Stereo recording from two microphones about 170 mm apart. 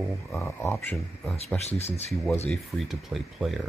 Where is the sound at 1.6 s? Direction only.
40° left (ahead or behind).